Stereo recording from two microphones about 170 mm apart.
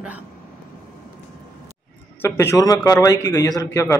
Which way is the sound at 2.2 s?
15° left (ahead or behind).